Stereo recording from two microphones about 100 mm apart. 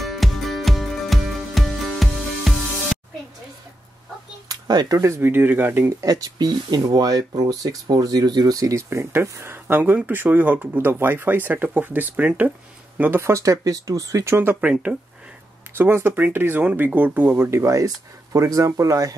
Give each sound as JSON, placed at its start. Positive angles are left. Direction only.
{"t": 0.0, "sound": "music", "side_deg": 0}
{"t": 4.5, "sound": "speech", "side_deg": -40}
{"t": 5.9, "sound": "speech", "side_deg": -35}
{"t": 15.8, "sound": "speech", "side_deg": -25}